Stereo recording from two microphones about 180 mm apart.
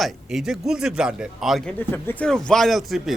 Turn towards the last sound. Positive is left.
turn(degrees=0)  # may be behind; listen again after turning